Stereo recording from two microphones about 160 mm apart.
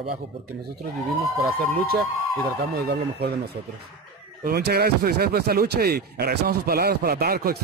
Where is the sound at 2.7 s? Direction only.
80° right.